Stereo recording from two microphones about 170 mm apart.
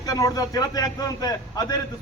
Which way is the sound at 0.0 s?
20° left (ahead or behind).